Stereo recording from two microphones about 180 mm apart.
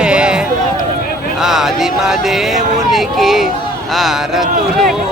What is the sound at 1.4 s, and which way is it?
Speech, centre (ahead or behind).